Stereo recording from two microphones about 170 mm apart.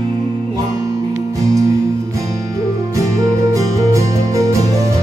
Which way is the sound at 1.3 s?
20° right (ahead or behind).